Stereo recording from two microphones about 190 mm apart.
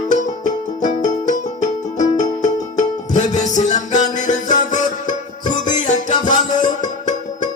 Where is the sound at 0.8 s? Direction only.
40° left (ahead or behind).